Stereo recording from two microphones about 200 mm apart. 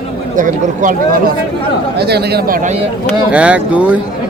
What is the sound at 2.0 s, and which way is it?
Speech, 55° right (ahead or behind).